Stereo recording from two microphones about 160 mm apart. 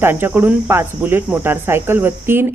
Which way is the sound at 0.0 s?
15° right (ahead or behind).